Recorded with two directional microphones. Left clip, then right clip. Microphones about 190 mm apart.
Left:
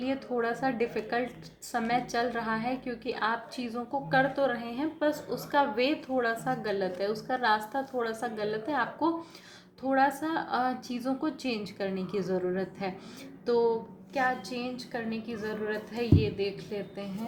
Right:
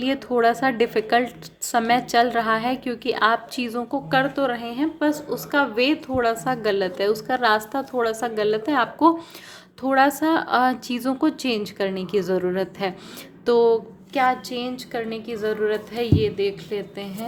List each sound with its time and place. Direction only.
0.0 s a woman's voice: 45° right (ahead or behind)